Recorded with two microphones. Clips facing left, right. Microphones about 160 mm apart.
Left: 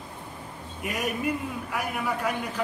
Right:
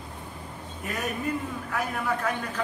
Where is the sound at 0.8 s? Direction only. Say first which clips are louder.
Left 2 dB; 10° left (ahead or behind).